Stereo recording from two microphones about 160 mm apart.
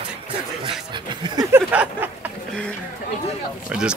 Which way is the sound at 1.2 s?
25° right (ahead or behind).